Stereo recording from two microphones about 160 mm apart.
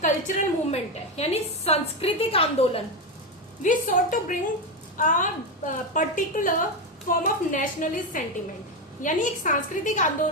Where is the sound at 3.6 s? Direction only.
55° left (ahead or behind).